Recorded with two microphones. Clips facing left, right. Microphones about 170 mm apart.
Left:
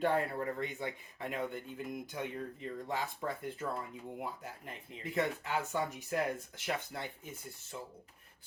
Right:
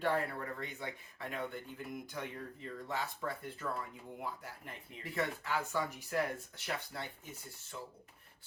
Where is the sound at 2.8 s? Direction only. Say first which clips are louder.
Left 1 dB; 20° left (ahead or behind).